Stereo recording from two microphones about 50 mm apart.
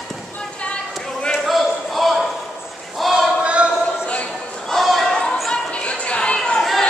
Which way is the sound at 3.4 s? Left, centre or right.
Right.